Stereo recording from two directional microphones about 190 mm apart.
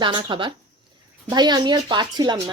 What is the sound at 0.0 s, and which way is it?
Speech, 25° right (ahead or behind).